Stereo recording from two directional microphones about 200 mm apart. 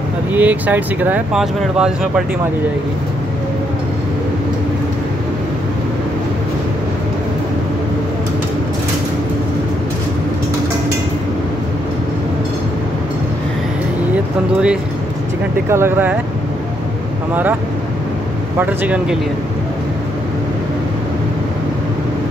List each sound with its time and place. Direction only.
0.3 s speech: 10° right (ahead or behind)
14.1 s speech: 5° right (ahead or behind)
18.6 s speech: 10° right (ahead or behind)